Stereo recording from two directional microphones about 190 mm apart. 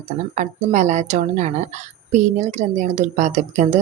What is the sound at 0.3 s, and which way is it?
Speech, 40° right (ahead or behind).